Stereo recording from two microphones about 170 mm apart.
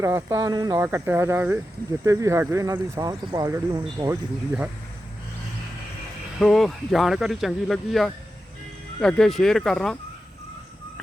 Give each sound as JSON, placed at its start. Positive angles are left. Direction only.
{"t": 0.0, "sound": "speech", "side_deg": -20}
{"t": 6.4, "sound": "speech", "side_deg": 0}